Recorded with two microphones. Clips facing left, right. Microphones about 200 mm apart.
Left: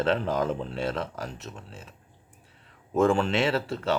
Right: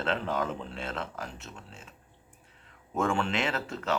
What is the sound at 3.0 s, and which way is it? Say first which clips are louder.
A man's voice: left 6 dB; 40° left (ahead or behind).